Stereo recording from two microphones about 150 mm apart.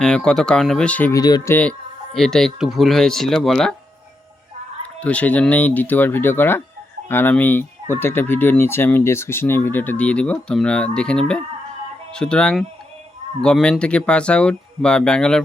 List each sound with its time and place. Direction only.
0.0 s speech: 5° left (ahead or behind)
1.1 s speech: 25° left (ahead or behind)
2.1 s speech: 5° left (ahead or behind)
4.9 s speech: 10° left (ahead or behind)